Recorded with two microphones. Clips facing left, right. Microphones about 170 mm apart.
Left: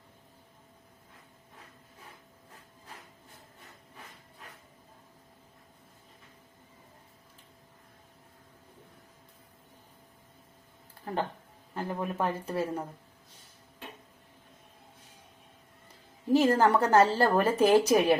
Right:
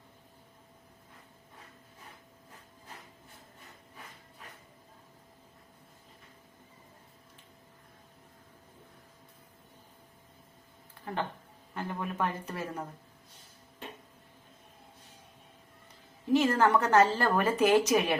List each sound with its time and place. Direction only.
11.0 s speech: 40° left (ahead or behind)
16.3 s speech: 35° left (ahead or behind)